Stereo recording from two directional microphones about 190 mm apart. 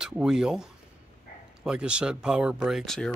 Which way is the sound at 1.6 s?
5° right (ahead or behind).